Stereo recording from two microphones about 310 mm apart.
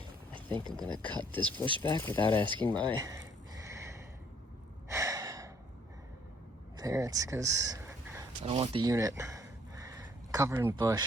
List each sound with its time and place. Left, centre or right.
0.3 s a sound: centre
1.3 s speech: centre
1.5 s speech: centre
1.8 s speech: centre
2.6 s speech: centre
3.6 s snort: centre
4.9 s gasp: centre
6.7 s speech: centre
8.5 s a sound: centre